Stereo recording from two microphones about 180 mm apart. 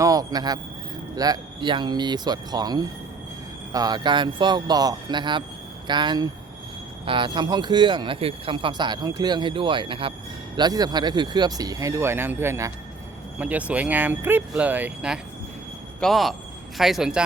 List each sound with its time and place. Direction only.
0.0 s a man's voice: 20° right (ahead or behind); by 17.2 s 5° right (ahead or behind)